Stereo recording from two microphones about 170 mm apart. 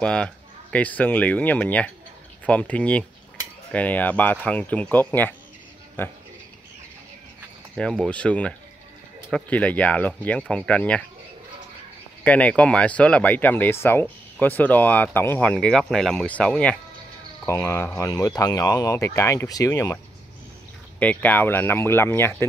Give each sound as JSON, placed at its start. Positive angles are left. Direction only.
{"t": 0.0, "sound": "speech", "side_deg": 5}
{"t": 7.7, "sound": "speech", "side_deg": 5}
{"t": 12.2, "sound": "speech", "side_deg": 10}
{"t": 21.0, "sound": "speech", "side_deg": 10}